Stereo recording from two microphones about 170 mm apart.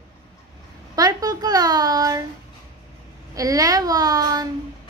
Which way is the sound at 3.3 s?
20° right (ahead or behind).